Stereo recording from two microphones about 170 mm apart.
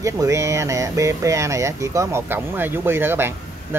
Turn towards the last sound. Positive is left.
turn(degrees=-15)  # may be behind; listen again after turning